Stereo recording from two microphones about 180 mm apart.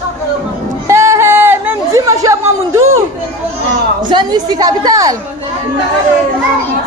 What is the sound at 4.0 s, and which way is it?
A woman's voice, 25° right (ahead or behind).